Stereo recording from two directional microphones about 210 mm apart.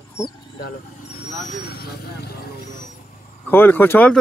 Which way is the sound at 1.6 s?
50° left (ahead or behind).